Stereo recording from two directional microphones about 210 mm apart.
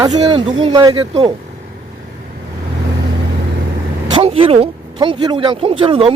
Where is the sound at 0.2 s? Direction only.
25° right (ahead or behind).